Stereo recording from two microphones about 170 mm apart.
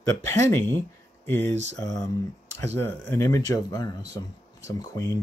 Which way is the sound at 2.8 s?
10° left (ahead or behind).